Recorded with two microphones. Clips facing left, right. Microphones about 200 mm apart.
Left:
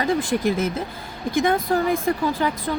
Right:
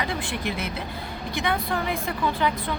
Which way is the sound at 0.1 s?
40° left (ahead or behind).